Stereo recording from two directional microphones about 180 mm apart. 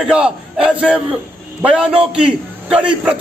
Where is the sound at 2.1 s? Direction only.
5° right (ahead or behind).